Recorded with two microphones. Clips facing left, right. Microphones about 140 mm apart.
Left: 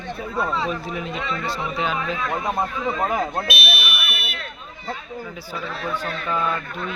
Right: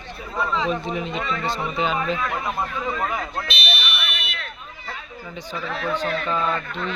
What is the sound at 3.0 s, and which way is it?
Speech, 35° left (ahead or behind).